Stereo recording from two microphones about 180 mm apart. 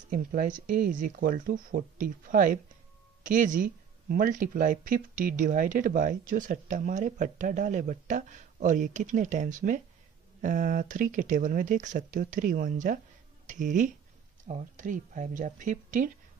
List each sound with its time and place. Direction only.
0.1 s speech: 50° right (ahead or behind)